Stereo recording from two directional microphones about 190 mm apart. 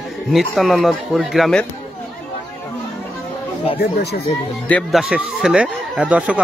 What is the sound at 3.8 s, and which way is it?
Speech, 60° left (ahead or behind).